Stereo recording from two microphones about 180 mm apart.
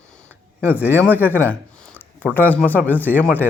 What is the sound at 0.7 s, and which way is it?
Speech, 10° right (ahead or behind).